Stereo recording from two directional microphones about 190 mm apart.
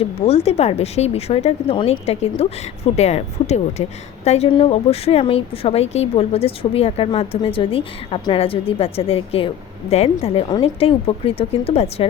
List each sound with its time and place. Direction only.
0.0 s speech: 30° left (ahead or behind)